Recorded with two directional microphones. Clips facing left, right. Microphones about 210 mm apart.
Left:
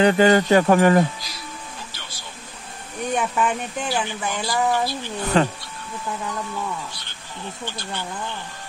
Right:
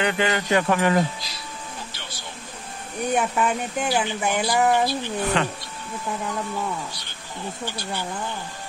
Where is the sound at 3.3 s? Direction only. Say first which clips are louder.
Even; 5° right (ahead or behind).